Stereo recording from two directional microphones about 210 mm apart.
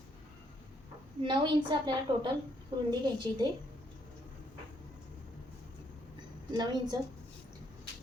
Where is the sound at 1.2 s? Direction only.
20° right (ahead or behind).